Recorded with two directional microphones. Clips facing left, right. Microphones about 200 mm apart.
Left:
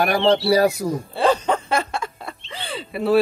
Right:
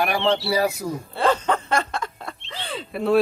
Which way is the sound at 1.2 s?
10° left (ahead or behind).